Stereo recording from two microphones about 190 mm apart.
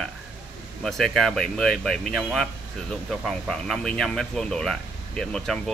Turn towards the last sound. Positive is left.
turn(degrees=5)  # may be behind; listen again after turning